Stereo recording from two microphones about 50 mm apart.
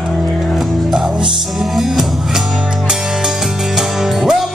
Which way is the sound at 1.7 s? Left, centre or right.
Centre.